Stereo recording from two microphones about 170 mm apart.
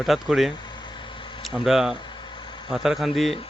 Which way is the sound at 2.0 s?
25° left (ahead or behind).